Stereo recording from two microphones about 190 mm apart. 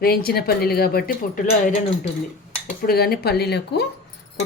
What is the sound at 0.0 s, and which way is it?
Speech, 55° left (ahead or behind).